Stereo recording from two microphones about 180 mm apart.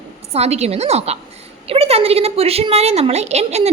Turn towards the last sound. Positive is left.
turn(degrees=-35)  # may be behind; listen again after turning